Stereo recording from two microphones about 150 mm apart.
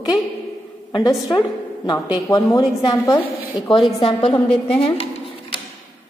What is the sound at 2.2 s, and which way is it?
A woman's voice, 25° left (ahead or behind).